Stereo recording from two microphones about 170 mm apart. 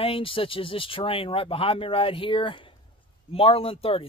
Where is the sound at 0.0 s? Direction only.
30° left (ahead or behind).